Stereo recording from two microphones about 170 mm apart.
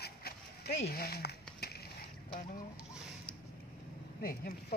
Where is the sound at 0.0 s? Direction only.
70° left (ahead or behind).